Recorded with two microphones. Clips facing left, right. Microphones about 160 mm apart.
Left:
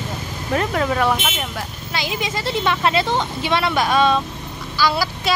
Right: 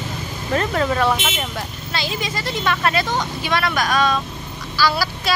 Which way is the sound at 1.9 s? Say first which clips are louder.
Left 1 dB; 15° left (ahead or behind).